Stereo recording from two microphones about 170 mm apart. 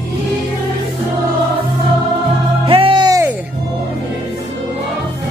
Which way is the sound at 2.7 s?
30° right (ahead or behind).